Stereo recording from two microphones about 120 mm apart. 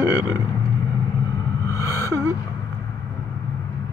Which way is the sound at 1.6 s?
30° left (ahead or behind).